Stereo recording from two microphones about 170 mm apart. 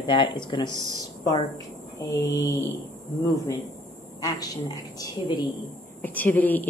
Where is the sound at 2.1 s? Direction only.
20° left (ahead or behind).